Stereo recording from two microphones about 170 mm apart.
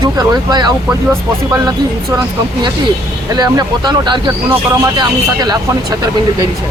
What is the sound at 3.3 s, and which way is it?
Speech, 25° right (ahead or behind).